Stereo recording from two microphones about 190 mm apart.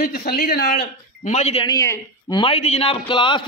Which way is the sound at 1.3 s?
35° left (ahead or behind).